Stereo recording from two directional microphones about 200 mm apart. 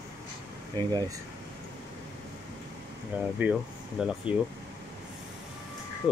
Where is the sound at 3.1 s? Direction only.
10° right (ahead or behind).